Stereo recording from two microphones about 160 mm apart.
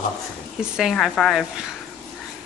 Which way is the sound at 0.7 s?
Centre (ahead or behind).